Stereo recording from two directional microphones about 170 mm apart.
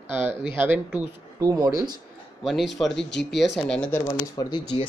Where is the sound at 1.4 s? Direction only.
20° right (ahead or behind).